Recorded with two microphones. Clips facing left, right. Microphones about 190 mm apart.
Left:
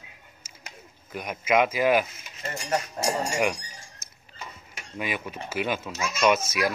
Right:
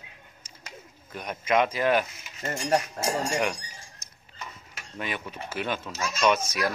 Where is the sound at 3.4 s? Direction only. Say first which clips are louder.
Left 2 dB; 10° left (ahead or behind).